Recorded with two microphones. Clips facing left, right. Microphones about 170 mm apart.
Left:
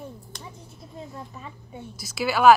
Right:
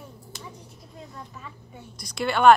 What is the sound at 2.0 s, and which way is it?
Speech, 5° left (ahead or behind).